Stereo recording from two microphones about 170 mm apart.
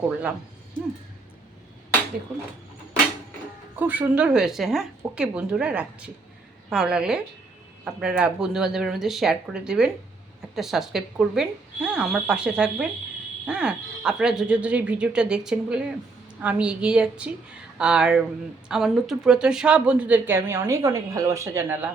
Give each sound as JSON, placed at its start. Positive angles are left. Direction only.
{"t": 3.8, "sound": "a woman's voice", "side_deg": -10}